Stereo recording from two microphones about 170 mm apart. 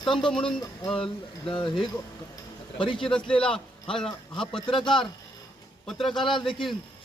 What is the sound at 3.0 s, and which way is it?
A man's voice, 5° left (ahead or behind).